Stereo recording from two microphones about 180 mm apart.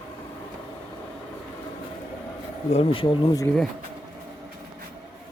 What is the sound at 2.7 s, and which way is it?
Speech, 30° left (ahead or behind).